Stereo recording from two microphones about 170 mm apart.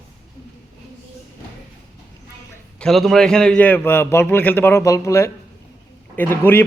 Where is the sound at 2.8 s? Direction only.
Centre (ahead or behind).